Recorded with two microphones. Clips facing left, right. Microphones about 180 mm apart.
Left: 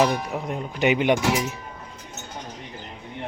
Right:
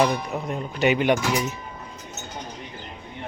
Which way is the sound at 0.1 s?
15° left (ahead or behind).